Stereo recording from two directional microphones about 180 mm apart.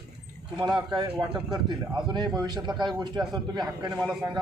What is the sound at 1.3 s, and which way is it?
A man's voice, 25° right (ahead or behind).